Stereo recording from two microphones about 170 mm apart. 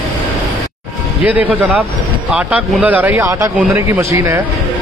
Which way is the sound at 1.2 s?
10° right (ahead or behind).